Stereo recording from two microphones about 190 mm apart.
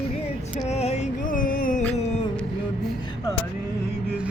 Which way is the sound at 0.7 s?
35° left (ahead or behind).